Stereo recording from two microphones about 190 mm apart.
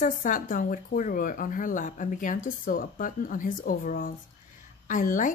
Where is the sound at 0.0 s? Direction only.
45° left (ahead or behind).